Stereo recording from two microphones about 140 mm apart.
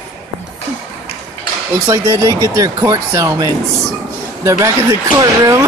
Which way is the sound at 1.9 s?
20° right (ahead or behind).